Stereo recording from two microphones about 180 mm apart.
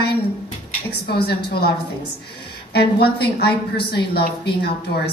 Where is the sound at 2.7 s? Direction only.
65° left (ahead or behind).